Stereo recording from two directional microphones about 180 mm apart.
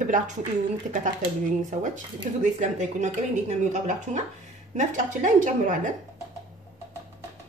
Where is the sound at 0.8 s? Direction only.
45° right (ahead or behind).